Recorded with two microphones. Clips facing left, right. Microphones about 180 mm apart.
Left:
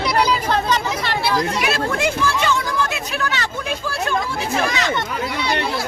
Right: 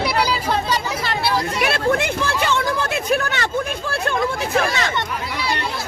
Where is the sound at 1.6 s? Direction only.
55° right (ahead or behind).